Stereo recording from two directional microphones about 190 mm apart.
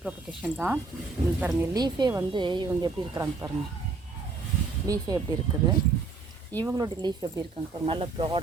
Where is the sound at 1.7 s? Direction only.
20° right (ahead or behind).